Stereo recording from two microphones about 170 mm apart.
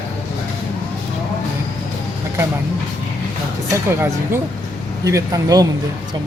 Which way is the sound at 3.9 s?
15° right (ahead or behind).